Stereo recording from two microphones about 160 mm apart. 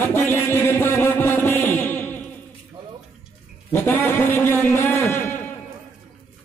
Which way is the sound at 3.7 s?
10° left (ahead or behind).